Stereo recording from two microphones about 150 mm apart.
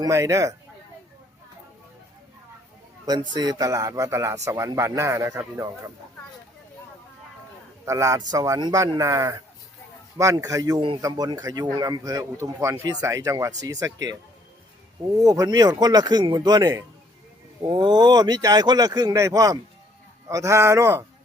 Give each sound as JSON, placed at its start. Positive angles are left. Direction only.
{"t": 0.0, "sound": "speech", "side_deg": -20}
{"t": 3.3, "sound": "speech", "side_deg": -25}
{"t": 7.9, "sound": "speech", "side_deg": -20}
{"t": 15.2, "sound": "speech", "side_deg": -25}